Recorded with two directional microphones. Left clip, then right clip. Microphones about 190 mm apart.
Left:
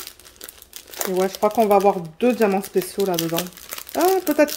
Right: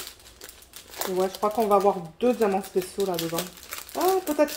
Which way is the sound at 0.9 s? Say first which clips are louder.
Left 4 dB; 30° left (ahead or behind).